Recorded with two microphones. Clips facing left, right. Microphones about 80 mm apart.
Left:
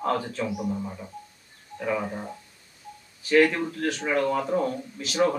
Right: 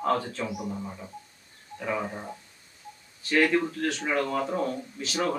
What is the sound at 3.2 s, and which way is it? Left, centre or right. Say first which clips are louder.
Speech: left 3 dB; centre.